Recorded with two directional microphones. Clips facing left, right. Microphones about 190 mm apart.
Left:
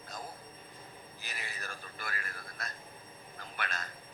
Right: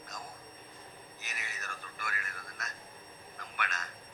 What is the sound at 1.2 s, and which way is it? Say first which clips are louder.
A man's voice: left 2 dB; 30° left (ahead or behind).